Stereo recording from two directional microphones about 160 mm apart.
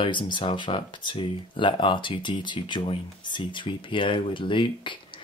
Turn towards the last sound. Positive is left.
turn(degrees=30)  # may be behind; listen again after turning